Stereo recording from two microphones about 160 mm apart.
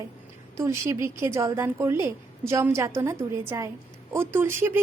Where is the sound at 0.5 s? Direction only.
20° right (ahead or behind).